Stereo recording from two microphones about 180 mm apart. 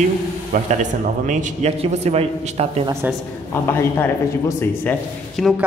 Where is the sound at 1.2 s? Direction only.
40° right (ahead or behind).